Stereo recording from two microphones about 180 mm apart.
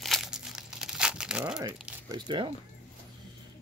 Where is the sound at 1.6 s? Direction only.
15° right (ahead or behind).